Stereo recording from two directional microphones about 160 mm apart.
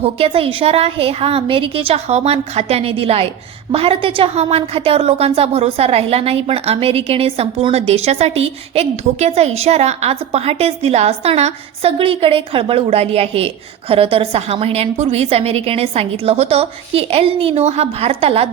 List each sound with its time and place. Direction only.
0.0 s a woman's voice: 35° right (ahead or behind)